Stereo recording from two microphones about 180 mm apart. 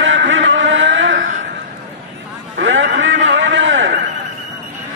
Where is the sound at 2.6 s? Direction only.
90° right.